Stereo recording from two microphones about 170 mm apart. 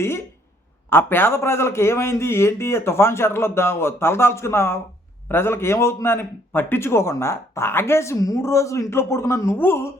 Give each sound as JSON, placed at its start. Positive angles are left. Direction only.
{"t": 0.9, "sound": "a man's voice", "side_deg": 10}